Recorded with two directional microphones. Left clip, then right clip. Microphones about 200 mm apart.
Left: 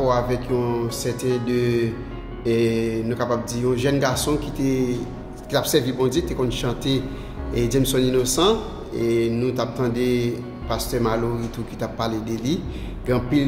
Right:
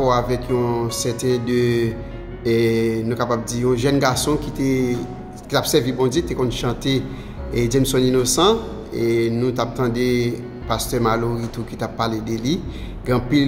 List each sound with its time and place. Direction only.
0.0 s speech: 20° right (ahead or behind)